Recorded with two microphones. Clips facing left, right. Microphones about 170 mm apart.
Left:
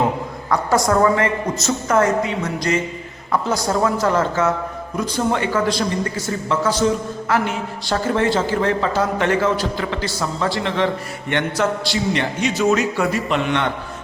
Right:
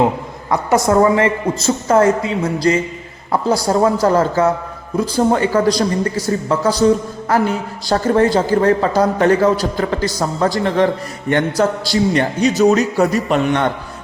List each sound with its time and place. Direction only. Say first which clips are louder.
0.5 s a woman's voice: right 3 dB; 25° right (ahead or behind); by 13.7 s 45° right (ahead or behind)